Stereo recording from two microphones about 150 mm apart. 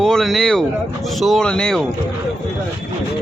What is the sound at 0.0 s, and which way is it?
Speech, centre (ahead or behind).